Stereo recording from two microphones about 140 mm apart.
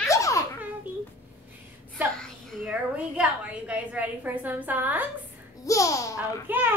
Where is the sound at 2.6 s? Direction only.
10° right (ahead or behind).